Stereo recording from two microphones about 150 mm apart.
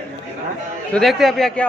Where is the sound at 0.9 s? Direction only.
Centre (ahead or behind).